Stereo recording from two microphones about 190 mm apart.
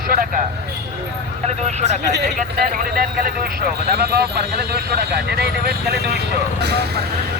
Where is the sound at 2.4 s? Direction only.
50° right (ahead or behind).